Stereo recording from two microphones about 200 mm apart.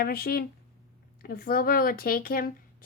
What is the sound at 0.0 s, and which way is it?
A woman's voice, 50° left (ahead or behind).